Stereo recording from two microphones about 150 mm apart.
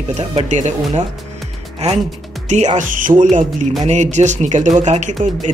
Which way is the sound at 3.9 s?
50° right (ahead or behind).